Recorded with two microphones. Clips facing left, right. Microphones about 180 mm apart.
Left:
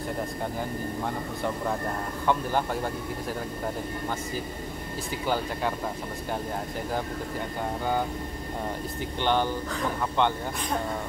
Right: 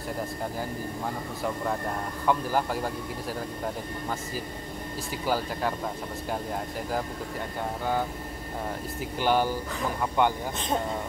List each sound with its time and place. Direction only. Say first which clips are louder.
2.2 s speech: even; centre (ahead or behind)
5.2 s speech: even; 5° right (ahead or behind)
9.2 s speech: right 1 dB; 10° right (ahead or behind)